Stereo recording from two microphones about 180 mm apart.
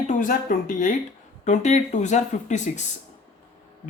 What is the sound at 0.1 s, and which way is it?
Speech, 50° left (ahead or behind).